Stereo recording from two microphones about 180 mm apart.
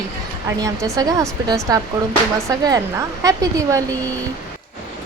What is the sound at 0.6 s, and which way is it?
Speech, 20° right (ahead or behind).